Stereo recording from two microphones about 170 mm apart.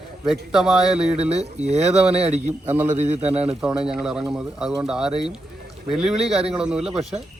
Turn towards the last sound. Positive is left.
turn(degrees=-5)  # may be behind; listen again after turning